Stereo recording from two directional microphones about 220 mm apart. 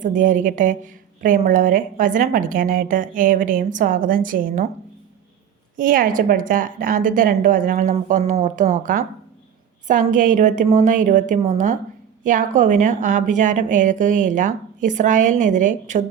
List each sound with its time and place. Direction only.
0.0 s a woman's voice: 35° right (ahead or behind)
5.7 s a woman's voice: 40° right (ahead or behind)